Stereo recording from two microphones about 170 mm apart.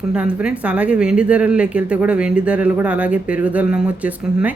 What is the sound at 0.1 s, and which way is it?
Speech, 10° right (ahead or behind).